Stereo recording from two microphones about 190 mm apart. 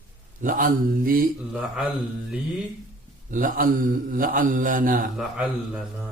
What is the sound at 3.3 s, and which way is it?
Mantra, 45° right (ahead or behind).